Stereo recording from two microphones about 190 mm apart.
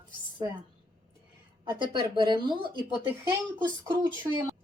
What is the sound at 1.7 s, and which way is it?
Speech, 25° right (ahead or behind).